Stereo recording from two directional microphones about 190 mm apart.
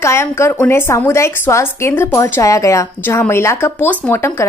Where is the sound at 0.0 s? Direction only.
15° left (ahead or behind).